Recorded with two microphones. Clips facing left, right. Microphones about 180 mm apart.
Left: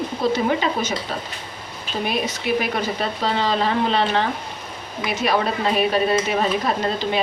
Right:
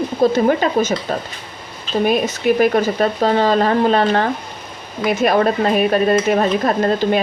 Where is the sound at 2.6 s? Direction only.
45° right (ahead or behind).